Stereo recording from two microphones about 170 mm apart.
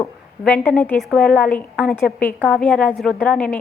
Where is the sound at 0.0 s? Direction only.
10° left (ahead or behind).